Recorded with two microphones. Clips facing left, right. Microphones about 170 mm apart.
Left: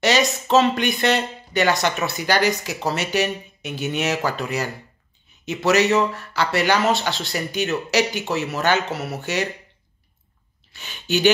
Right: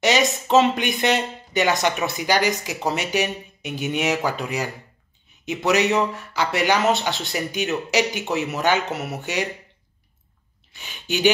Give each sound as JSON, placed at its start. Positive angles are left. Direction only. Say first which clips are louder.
{"t": 0.5, "sound": "speech", "louder": "even", "side_deg": -15}
{"t": 10.7, "sound": "speech", "louder": "left 4 dB", "side_deg": -15}